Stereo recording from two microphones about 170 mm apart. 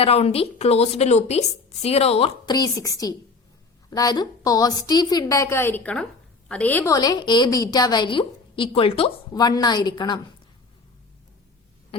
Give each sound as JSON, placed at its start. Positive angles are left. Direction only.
{"t": 0.0, "sound": "a woman's voice", "side_deg": 35}
{"t": 2.5, "sound": "a woman's voice", "side_deg": 20}
{"t": 6.9, "sound": "a woman's voice", "side_deg": 20}
{"t": 9.3, "sound": "a woman's voice", "side_deg": 20}